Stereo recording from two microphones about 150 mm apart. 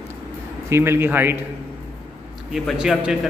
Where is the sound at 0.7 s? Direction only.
15° right (ahead or behind).